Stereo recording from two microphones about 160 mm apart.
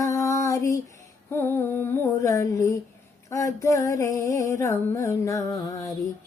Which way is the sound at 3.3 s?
20° left (ahead or behind).